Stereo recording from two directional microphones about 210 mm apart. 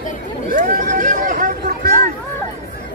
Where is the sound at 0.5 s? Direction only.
40° right (ahead or behind).